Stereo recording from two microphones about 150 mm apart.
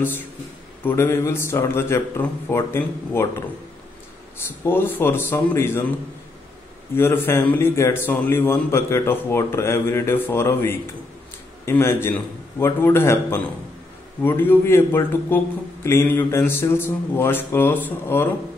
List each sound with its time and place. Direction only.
0.8 s a man's voice: 15° left (ahead or behind)
4.6 s a man's voice: 15° left (ahead or behind)
7.0 s a man's voice: 15° left (ahead or behind)